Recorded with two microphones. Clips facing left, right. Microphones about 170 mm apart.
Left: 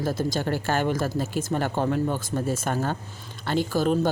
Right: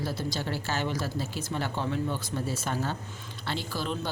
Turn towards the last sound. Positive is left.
turn(degrees=45)  # may be behind; listen again after turning